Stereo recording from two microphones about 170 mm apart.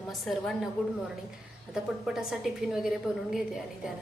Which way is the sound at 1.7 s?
5° right (ahead or behind).